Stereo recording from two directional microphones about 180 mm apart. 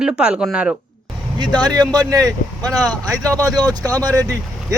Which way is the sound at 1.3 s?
25° right (ahead or behind).